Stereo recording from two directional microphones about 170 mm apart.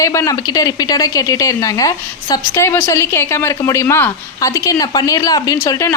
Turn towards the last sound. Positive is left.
turn(degrees=20)  # may be behind; listen again after turning